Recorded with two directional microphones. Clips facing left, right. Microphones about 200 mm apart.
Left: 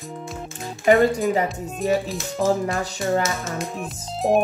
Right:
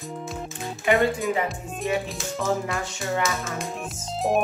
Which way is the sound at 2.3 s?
35° left (ahead or behind).